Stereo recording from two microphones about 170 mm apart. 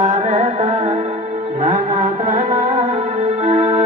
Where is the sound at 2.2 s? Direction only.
45° right (ahead or behind).